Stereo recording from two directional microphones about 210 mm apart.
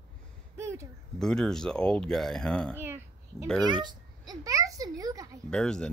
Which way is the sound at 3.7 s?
20° right (ahead or behind).